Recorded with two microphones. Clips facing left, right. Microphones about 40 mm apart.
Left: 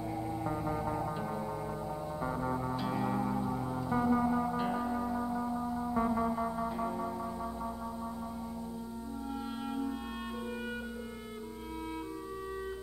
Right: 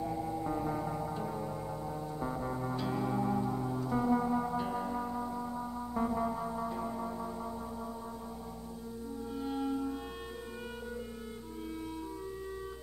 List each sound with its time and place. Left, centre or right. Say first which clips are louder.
0.1 s music: right 1 dB; centre
0.9 s music: left 1 dB; centre
3.3 s music: right 1 dB; centre
4.6 s music: left 2 dB; left
4.9 s music: left 2 dB; centre